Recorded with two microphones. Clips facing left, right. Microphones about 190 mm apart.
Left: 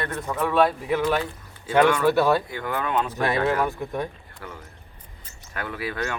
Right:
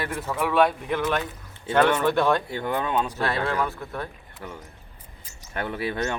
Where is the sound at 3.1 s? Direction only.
15° left (ahead or behind).